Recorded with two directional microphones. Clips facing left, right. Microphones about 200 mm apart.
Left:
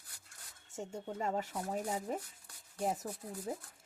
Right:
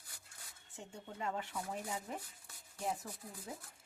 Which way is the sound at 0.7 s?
45° left (ahead or behind).